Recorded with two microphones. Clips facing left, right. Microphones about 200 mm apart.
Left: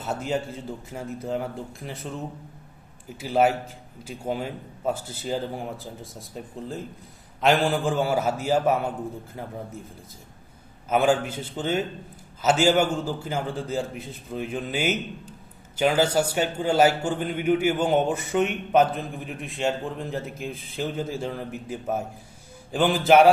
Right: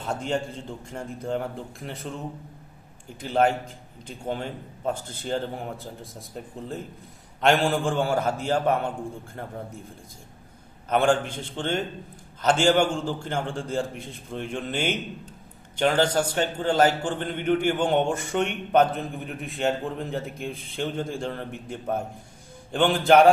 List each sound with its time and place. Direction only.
0.0 s a man's voice: 5° left (ahead or behind)
10.8 s a man's voice: 5° left (ahead or behind)